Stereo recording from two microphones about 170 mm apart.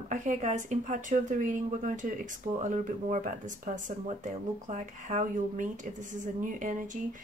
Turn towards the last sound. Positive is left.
turn(degrees=-50)  # may be behind; listen again after turning